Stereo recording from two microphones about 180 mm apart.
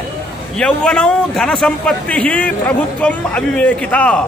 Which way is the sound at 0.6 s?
5° left (ahead or behind).